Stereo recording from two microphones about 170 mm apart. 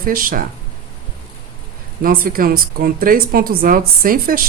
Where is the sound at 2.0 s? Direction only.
55° right (ahead or behind).